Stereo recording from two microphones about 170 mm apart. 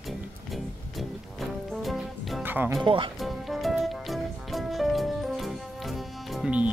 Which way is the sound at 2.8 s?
30° right (ahead or behind).